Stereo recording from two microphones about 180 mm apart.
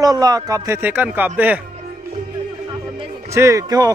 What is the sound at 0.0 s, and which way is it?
A man's voice, 20° right (ahead or behind).